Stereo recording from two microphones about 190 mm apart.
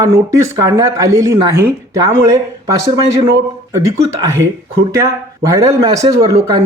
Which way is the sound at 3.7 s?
15° right (ahead or behind).